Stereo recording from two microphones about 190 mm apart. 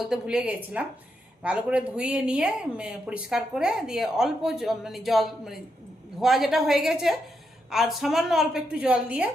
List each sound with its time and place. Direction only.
0.0 s a woman's voice: 5° right (ahead or behind)